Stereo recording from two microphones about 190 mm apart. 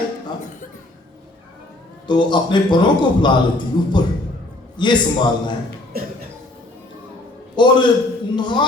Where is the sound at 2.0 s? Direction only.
25° left (ahead or behind).